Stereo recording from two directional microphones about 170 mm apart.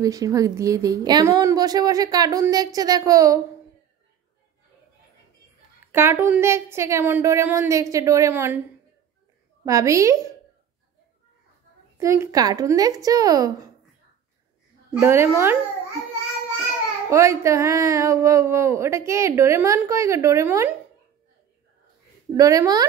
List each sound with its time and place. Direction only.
0.0 s a woman's voice: 20° right (ahead or behind)
5.9 s speech: 15° right (ahead or behind)
9.7 s speech: 20° right (ahead or behind)
12.0 s a woman's voice: 15° right (ahead or behind)
14.9 s speech: 15° right (ahead or behind)
17.1 s speech: 15° right (ahead or behind)
22.4 s a woman's voice: 20° right (ahead or behind)